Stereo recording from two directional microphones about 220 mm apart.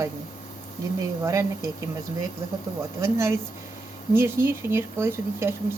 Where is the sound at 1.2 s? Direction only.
15° right (ahead or behind).